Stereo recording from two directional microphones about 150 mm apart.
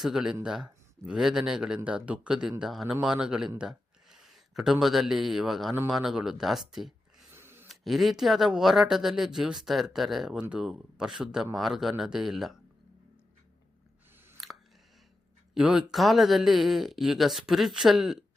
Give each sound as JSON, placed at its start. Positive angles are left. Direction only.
{"t": 0.0, "sound": "speech", "side_deg": -5}
{"t": 7.3, "sound": "a sound", "side_deg": -15}
{"t": 7.7, "sound": "speech", "side_deg": 0}
{"t": 14.3, "sound": "chewing", "side_deg": 0}
{"t": 15.5, "sound": "speech", "side_deg": -5}